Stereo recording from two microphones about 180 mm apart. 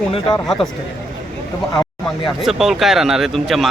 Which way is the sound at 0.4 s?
Centre (ahead or behind).